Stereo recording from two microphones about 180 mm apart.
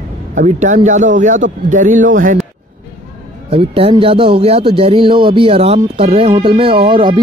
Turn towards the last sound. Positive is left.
turn(degrees=-25)  # may be behind; listen again after turning